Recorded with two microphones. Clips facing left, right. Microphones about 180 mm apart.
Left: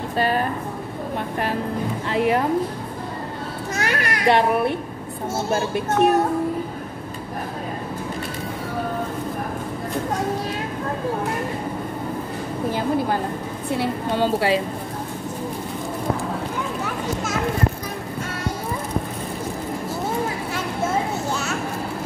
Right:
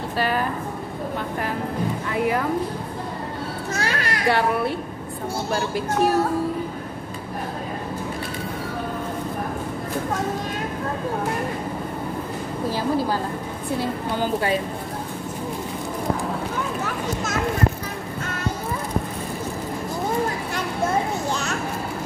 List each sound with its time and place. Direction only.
2.0 s speech: 25° left (ahead or behind)
3.8 s a sound: 20° left (ahead or behind)
5.5 s speech: 20° left (ahead or behind)
13.7 s a woman's voice: 80° left